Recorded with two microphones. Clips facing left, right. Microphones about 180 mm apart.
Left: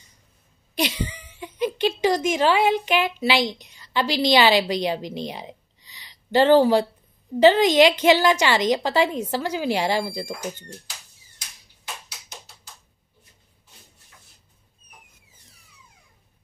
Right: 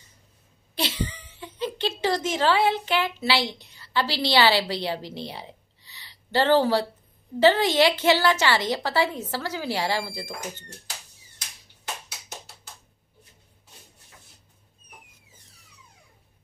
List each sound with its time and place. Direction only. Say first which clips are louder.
0.7 s a woman's voice: left 3 dB; 15° left (ahead or behind)